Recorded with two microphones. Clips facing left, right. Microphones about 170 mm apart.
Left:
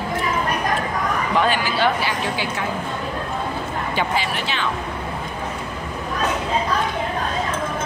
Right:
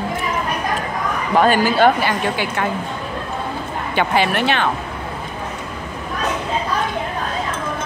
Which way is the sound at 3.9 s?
60° right (ahead or behind).